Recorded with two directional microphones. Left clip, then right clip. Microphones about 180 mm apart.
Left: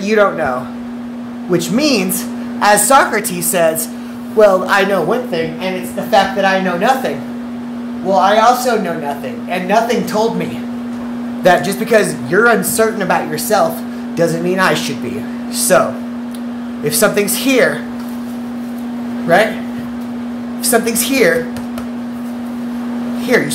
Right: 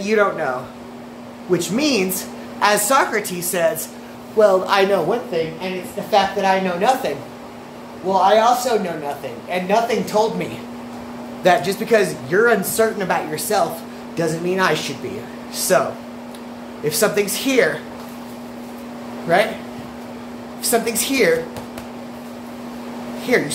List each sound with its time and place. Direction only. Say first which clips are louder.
0.0 s a woman's voice: left 5 dB; 5° left (ahead or behind)
1.5 s a woman's voice: left 4 dB; 10° left (ahead or behind)
4.6 s speech: left 3 dB; 10° right (ahead or behind)
6.1 s speech: left 4 dB; 10° right (ahead or behind)
8.1 s a woman's voice: left 4 dB; 5° right (ahead or behind)
11.4 s a woman's voice: left 4 dB; 5° left (ahead or behind)
19.3 s a woman's voice: left 5 dB; 5° left (ahead or behind)
20.7 s a woman's voice: left 5 dB; centre (ahead or behind)
23.3 s a woman's voice: left 4 dB; 5° left (ahead or behind)